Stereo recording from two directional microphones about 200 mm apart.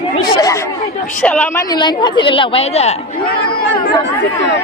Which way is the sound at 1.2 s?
5° left (ahead or behind).